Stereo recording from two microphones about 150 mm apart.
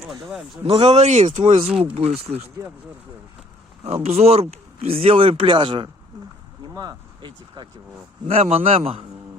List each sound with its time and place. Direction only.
0.0 s speech: centre (ahead or behind)
0.6 s speech: 40° right (ahead or behind)
3.8 s speech: 45° right (ahead or behind)
8.3 s speech: 45° right (ahead or behind)